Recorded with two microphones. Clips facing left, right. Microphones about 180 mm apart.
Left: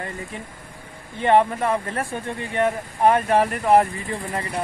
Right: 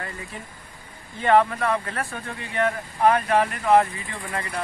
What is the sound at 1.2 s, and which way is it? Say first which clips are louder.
Speech: left 1 dB; 20° left (ahead or behind).